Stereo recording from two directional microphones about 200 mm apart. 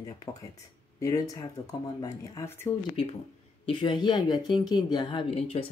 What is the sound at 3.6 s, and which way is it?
A woman's voice, 25° left (ahead or behind).